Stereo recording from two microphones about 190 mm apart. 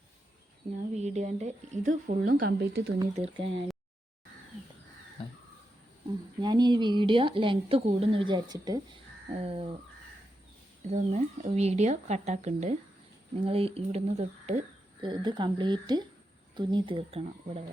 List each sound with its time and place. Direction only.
0.8 s speech: 35° right (ahead or behind)
2.5 s speech: 65° right (ahead or behind)
3.2 s a woman's voice: 30° right (ahead or behind)
6.4 s a woman's voice: 20° right (ahead or behind)
10.8 s speech: 35° right (ahead or behind)
15.0 s a woman's voice: 25° right (ahead or behind)